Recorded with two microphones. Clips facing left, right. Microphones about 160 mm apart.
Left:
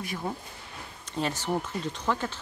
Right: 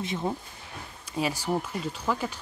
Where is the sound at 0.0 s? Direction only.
20° right (ahead or behind).